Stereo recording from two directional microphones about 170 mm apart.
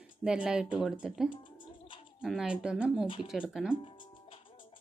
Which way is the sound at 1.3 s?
30° left (ahead or behind).